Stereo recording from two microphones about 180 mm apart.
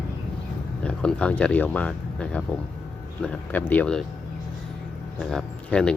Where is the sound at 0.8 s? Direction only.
5° left (ahead or behind).